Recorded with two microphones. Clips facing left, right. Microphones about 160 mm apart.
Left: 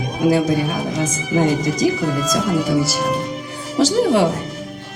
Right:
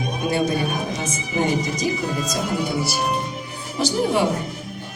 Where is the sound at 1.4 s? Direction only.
90° left.